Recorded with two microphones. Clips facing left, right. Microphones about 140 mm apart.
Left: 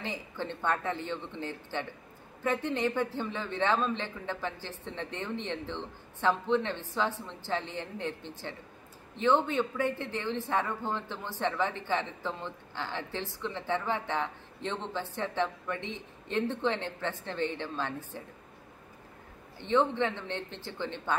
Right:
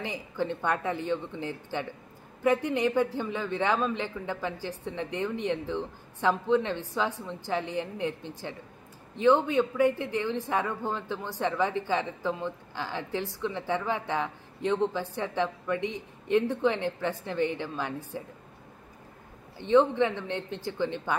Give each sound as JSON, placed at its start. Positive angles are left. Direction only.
{"t": 0.0, "sound": "speech", "side_deg": -15}
{"t": 19.6, "sound": "speech", "side_deg": -15}